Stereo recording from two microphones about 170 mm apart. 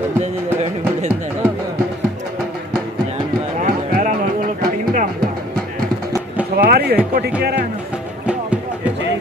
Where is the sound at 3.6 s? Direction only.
50° right (ahead or behind).